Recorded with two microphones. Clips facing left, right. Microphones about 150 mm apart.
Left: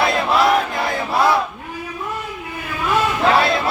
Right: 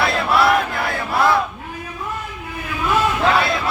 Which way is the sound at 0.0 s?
20° left (ahead or behind).